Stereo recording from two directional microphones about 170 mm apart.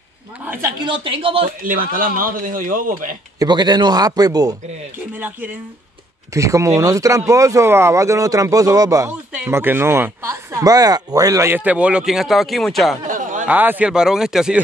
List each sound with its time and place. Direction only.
0.5 s speech: 20° right (ahead or behind)
0.9 s a man's voice: 30° right (ahead or behind)
1.6 s speech: 55° right (ahead or behind)
3.3 s speech: 25° right (ahead or behind)
4.9 s speech: 10° right (ahead or behind)
9.3 s speech: 10° right (ahead or behind)
13.0 s a sound: 50° right (ahead or behind)
13.5 s speech: 10° right (ahead or behind)